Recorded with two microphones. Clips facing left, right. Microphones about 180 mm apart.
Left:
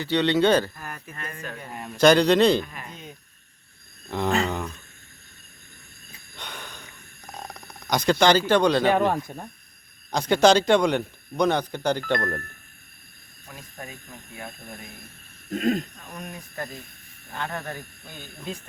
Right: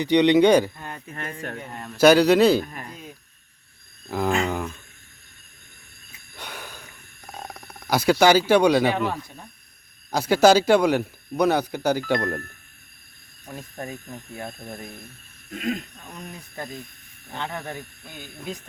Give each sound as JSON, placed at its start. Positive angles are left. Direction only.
{"t": 0.0, "sound": "speech", "side_deg": -15}
{"t": 0.8, "sound": "speech", "side_deg": -25}
{"t": 1.1, "sound": "speech", "side_deg": -60}
{"t": 1.6, "sound": "a man's voice", "side_deg": 5}
{"t": 2.0, "sound": "speech", "side_deg": -5}
{"t": 2.9, "sound": "a sound", "side_deg": -5}
{"t": 4.4, "sound": "a man's voice", "side_deg": -5}
{"t": 6.3, "sound": "wheeze", "side_deg": -5}
{"t": 7.3, "sound": "a sound", "side_deg": -5}
{"t": 8.9, "sound": "speech", "side_deg": 50}
{"t": 10.1, "sound": "speech", "side_deg": -5}
{"t": 15.5, "sound": "speech", "side_deg": 40}
{"t": 17.3, "sound": "speech", "side_deg": -20}